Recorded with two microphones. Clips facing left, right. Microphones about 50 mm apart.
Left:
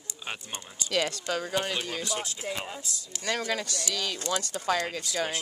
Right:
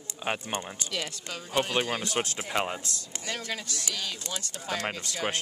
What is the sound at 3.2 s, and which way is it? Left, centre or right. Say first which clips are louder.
Speech: left 5 dB; left.